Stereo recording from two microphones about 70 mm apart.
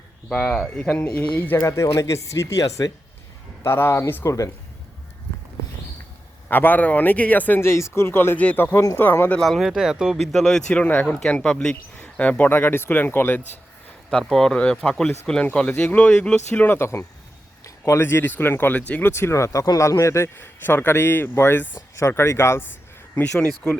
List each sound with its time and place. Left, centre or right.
0.3 s speech: centre
1.5 s speech: left
3.6 s a man's voice: left
6.5 s speech: left
7.6 s a man's voice: left
9.4 s speech: centre
10.3 s speech: centre
10.7 s speech: centre
14.1 s speech: centre
16.7 s a man's voice: left
18.8 s speech: left
19.0 s a man's voice: left
19.6 s a man's voice: left
21.9 s a man's voice: left